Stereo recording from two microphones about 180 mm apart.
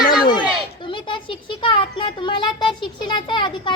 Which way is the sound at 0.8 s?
30° left (ahead or behind).